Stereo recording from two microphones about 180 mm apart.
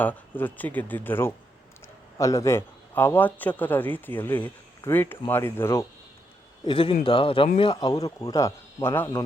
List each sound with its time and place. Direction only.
0.0 s a man's voice: 10° left (ahead or behind)
6.7 s speech: 30° left (ahead or behind); by 9.2 s 15° left (ahead or behind)